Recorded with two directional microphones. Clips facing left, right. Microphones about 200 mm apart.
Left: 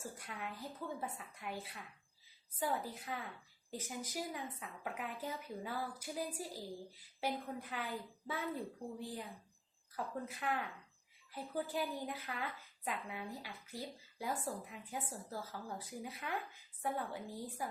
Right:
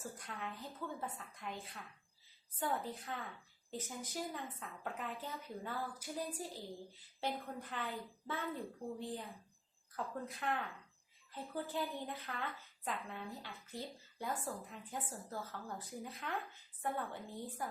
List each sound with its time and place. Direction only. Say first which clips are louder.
0.0 s a woman's voice: even; 10° left (ahead or behind)
9.9 s a woman's voice: left 1 dB; 5° left (ahead or behind)